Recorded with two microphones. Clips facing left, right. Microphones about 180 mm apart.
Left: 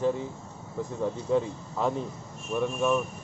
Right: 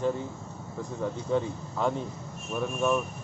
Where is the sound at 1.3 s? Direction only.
Centre (ahead or behind).